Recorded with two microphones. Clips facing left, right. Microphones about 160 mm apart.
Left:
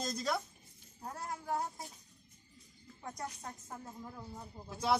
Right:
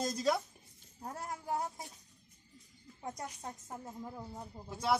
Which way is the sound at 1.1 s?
20° right (ahead or behind).